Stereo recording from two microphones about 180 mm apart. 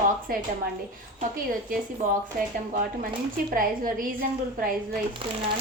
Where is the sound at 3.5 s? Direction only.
50° right (ahead or behind).